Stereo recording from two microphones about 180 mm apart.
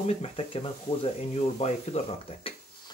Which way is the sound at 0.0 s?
35° left (ahead or behind).